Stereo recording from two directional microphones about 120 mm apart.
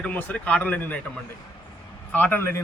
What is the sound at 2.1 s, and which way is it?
Speech, 15° left (ahead or behind).